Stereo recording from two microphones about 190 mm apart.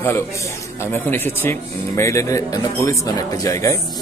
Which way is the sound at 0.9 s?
10° left (ahead or behind).